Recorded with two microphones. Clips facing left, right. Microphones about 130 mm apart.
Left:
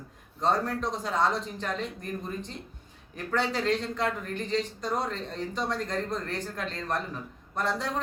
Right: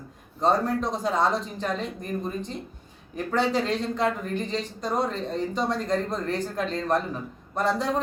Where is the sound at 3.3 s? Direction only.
15° right (ahead or behind).